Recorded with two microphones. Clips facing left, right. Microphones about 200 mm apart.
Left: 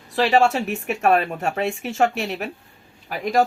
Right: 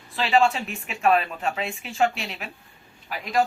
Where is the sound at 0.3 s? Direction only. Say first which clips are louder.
Left 2 dB; 45° left (ahead or behind).